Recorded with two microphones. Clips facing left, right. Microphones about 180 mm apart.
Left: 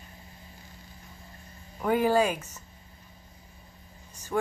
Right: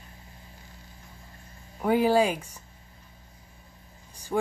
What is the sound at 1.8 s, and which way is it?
Speech, 10° right (ahead or behind).